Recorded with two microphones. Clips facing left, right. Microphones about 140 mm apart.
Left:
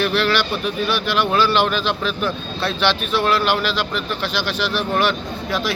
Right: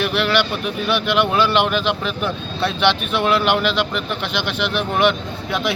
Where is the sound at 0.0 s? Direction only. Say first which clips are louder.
Even; 15° right (ahead or behind).